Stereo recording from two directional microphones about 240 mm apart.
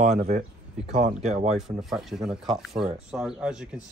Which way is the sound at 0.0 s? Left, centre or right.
Right.